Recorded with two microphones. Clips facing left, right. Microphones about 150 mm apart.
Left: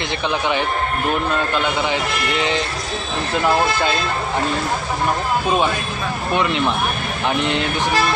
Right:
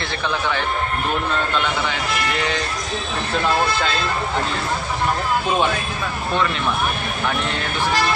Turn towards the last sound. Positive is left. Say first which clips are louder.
# left 4 dB
turn(degrees=20)  # may be behind; listen again after turning